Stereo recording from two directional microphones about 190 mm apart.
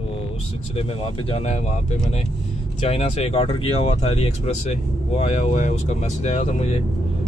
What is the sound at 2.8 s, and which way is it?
Speech, 35° left (ahead or behind).